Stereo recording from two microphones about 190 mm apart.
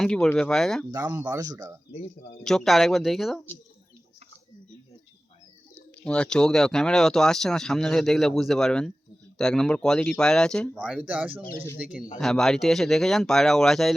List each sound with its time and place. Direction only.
0.0 s speech: 5° left (ahead or behind)
0.9 s speech: 20° right (ahead or behind)
1.9 s speech: 35° left (ahead or behind)
2.4 s speech: 5° left (ahead or behind)
6.0 s speech: 5° left (ahead or behind)